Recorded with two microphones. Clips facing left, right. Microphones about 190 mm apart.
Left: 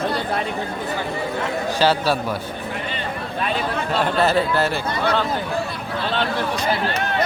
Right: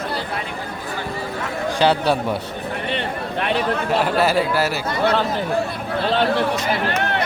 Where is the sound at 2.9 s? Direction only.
65° right (ahead or behind).